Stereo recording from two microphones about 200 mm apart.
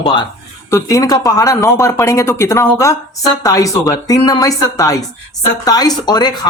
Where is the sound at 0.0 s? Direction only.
25° left (ahead or behind).